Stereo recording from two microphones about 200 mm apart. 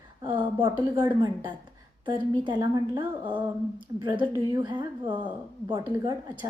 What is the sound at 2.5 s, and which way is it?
A woman's voice, 20° right (ahead or behind).